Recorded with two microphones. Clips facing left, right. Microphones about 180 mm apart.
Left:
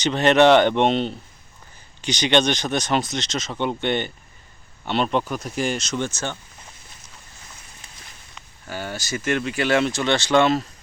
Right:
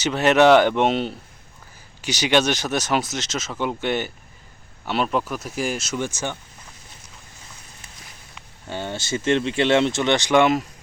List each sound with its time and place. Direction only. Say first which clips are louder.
0.0 s speech: even; 5° right (ahead or behind)
8.6 s speech: right 2 dB; 25° right (ahead or behind)